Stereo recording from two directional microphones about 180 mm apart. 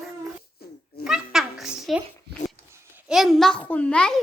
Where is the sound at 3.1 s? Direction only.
Centre (ahead or behind).